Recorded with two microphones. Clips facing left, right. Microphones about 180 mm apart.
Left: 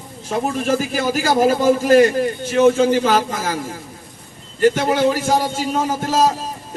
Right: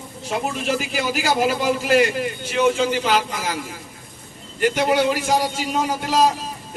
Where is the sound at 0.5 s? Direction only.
45° left (ahead or behind).